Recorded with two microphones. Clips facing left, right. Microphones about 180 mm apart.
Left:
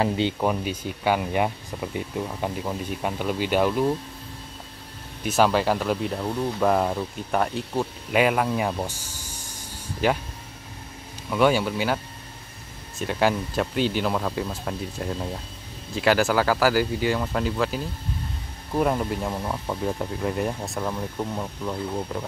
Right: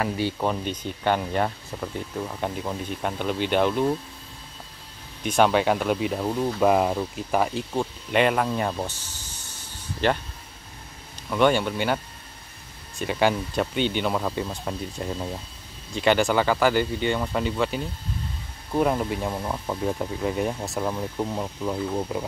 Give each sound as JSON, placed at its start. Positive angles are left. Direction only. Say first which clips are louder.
{"t": 0.0, "sound": "speech", "louder": "left 3 dB", "side_deg": 20}
{"t": 0.4, "sound": "speech", "louder": "left 1 dB", "side_deg": 10}
{"t": 5.2, "sound": "speech", "louder": "right 1 dB", "side_deg": 0}
{"t": 11.2, "sound": "speech", "louder": "even", "side_deg": 5}
{"t": 13.0, "sound": "speech", "louder": "even", "side_deg": 0}